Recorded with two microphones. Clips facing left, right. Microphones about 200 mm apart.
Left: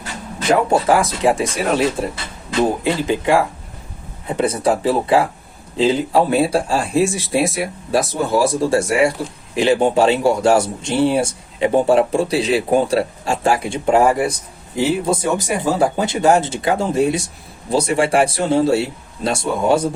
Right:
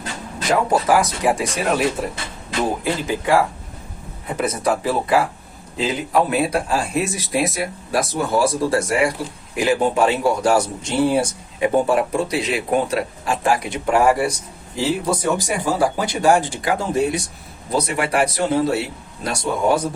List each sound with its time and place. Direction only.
0.7 s speech: 25° left (ahead or behind)
4.4 s speech: 30° left (ahead or behind)